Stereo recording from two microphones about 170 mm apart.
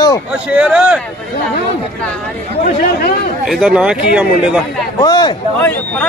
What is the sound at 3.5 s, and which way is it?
Speech, 5° right (ahead or behind).